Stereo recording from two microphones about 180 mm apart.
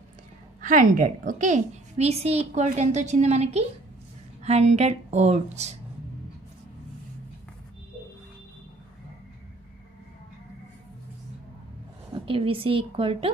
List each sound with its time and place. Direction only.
0.6 s a woman's voice: 45° right (ahead or behind)
12.1 s a woman's voice: 30° right (ahead or behind)